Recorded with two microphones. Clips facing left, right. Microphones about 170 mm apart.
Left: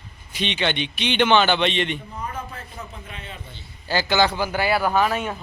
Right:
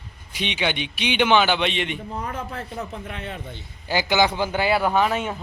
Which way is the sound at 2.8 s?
40° right (ahead or behind).